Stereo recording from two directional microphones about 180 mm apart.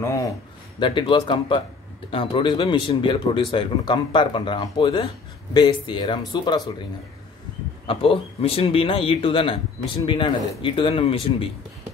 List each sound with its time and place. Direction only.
0.7 s speech: 25° left (ahead or behind)
7.8 s speech: 30° left (ahead or behind)